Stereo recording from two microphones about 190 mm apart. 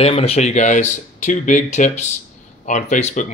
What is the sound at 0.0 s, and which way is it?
Speech, 30° left (ahead or behind).